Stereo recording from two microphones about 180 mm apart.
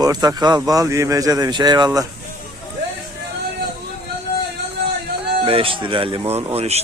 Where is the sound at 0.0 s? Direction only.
20° right (ahead or behind).